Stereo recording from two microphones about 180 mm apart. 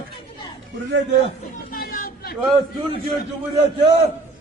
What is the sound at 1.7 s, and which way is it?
Vehicle, 55° left (ahead or behind).